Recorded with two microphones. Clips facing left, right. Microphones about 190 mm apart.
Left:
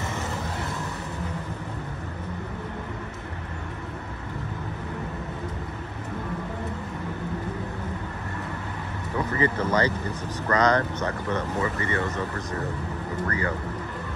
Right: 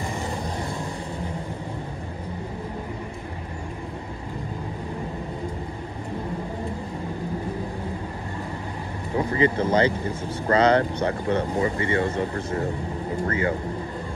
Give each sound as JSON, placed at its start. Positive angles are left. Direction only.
{"t": 9.1, "sound": "vehicle", "side_deg": -30}
{"t": 9.6, "sound": "speech", "side_deg": -25}